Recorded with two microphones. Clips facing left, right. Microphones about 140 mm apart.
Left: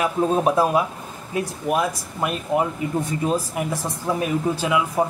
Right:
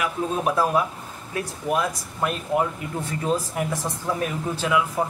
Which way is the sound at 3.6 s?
10° left (ahead or behind).